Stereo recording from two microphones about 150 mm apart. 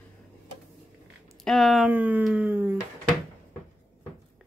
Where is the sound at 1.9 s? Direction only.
10° right (ahead or behind).